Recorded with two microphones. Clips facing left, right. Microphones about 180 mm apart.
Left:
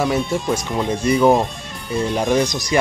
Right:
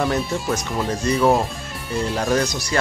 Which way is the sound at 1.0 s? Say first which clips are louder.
Left 3 dB; 10° left (ahead or behind).